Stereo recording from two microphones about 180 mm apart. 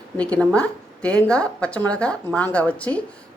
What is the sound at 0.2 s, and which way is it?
A woman's voice, 5° left (ahead or behind).